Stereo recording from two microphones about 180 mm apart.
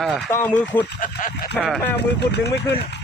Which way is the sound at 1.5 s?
5° left (ahead or behind).